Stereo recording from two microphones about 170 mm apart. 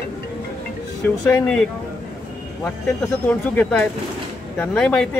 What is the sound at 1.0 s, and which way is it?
Speech, 10° left (ahead or behind).